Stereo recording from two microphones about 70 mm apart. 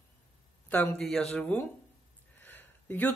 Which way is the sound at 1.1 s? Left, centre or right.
Centre.